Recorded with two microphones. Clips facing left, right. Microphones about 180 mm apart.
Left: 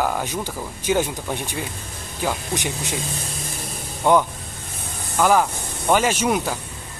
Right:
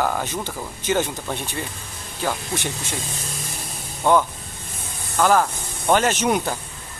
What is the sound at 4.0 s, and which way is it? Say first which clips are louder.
Speech: left 1 dB; 15° left (ahead or behind).